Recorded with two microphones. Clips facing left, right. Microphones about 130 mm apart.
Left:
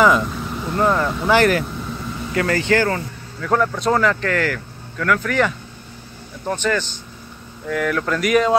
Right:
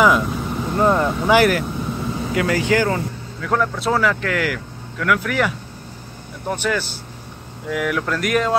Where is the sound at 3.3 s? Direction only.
Centre (ahead or behind).